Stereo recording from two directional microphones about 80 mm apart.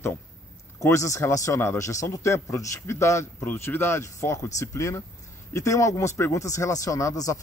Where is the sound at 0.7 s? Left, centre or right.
Left.